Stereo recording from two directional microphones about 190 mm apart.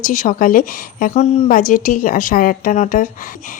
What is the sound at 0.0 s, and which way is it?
A woman's voice, 40° left (ahead or behind).